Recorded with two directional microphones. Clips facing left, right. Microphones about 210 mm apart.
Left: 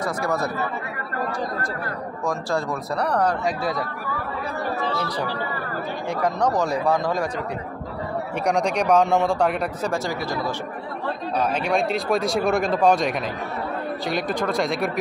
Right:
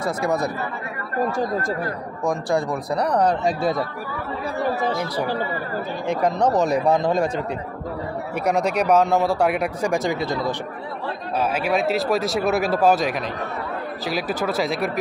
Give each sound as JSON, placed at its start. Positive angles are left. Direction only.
{"t": 0.0, "sound": "speech", "side_deg": -20}
{"t": 2.2, "sound": "speech", "side_deg": -15}
{"t": 4.9, "sound": "speech", "side_deg": -10}
{"t": 6.0, "sound": "speech", "side_deg": -20}
{"t": 8.5, "sound": "speech", "side_deg": -5}
{"t": 11.3, "sound": "speech", "side_deg": -5}